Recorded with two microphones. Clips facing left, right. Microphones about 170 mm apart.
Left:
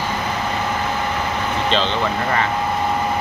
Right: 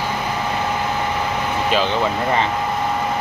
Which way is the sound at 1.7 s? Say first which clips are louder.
Right 2 dB; 15° right (ahead or behind).